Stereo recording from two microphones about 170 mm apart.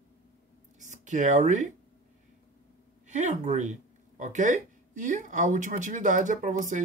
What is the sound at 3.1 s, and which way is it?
Speech, 45° right (ahead or behind).